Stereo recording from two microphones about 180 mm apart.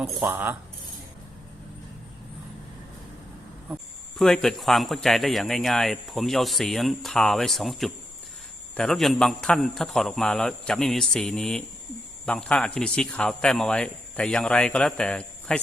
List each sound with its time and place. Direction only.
0.0 s speech: 10° right (ahead or behind)
4.2 s speech: centre (ahead or behind)